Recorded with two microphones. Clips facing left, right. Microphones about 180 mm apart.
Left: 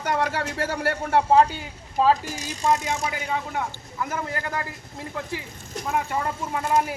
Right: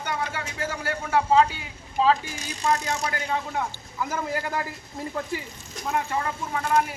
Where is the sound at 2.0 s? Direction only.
40° left (ahead or behind).